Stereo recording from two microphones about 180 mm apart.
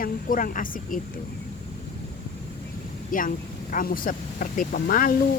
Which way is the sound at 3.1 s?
50° left (ahead or behind).